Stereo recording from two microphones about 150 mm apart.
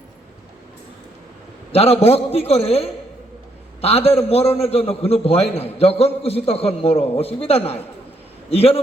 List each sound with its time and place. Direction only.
1.7 s a man's voice: 45° left (ahead or behind)